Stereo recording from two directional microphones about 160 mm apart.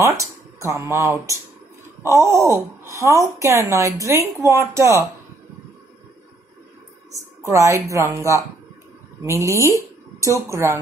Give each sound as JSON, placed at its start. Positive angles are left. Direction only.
{"t": 0.0, "sound": "speech", "side_deg": -20}
{"t": 7.4, "sound": "speech", "side_deg": -20}